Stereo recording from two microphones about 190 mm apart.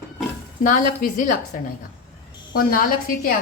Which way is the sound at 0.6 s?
45° left (ahead or behind).